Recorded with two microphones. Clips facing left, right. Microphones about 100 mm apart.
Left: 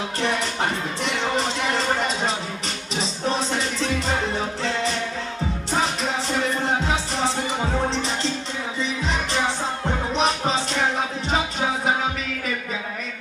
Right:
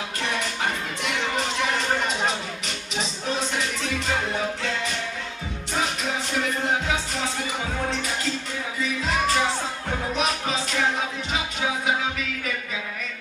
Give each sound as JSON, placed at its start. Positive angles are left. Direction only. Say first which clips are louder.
{"t": 10.1, "sound": "music", "louder": "left 5 dB", "side_deg": 30}